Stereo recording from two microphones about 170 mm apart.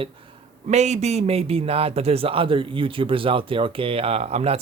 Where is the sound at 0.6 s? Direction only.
45° right (ahead or behind).